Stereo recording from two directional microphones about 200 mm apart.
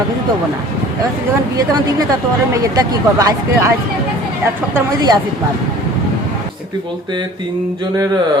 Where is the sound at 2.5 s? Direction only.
15° right (ahead or behind).